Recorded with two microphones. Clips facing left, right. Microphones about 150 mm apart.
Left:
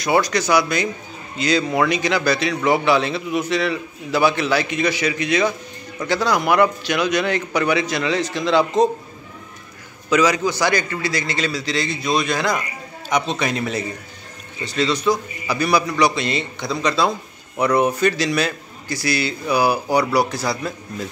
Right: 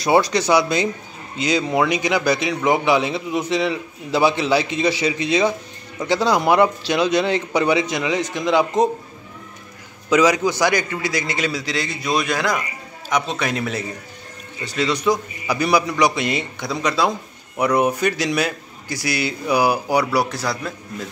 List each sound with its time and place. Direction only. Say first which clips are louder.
0.0 s a man's voice: right 2 dB; 25° right (ahead or behind)
10.0 s a man's voice: right 1 dB; 20° right (ahead or behind); by 20.7 s centre (ahead or behind)